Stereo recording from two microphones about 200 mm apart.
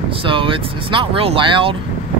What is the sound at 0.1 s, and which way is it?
Speech, 25° right (ahead or behind).